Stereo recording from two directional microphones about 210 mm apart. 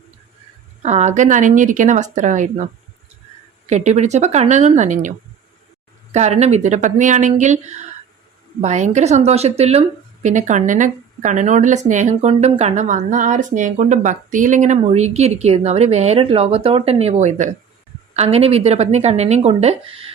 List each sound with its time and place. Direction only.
0.8 s a woman's voice: 35° right (ahead or behind)
3.7 s a woman's voice: 35° right (ahead or behind)